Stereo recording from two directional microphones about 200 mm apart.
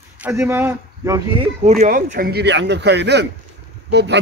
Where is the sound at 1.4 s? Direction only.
35° right (ahead or behind).